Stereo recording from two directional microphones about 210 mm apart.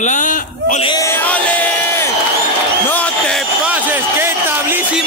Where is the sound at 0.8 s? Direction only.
20° left (ahead or behind).